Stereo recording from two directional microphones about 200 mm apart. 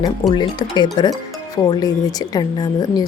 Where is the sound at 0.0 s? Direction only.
20° left (ahead or behind).